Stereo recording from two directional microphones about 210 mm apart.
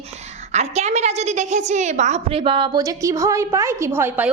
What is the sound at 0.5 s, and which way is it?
A woman's voice, 30° right (ahead or behind).